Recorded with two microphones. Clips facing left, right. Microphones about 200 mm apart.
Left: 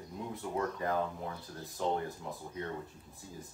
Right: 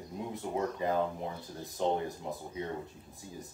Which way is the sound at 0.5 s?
20° right (ahead or behind).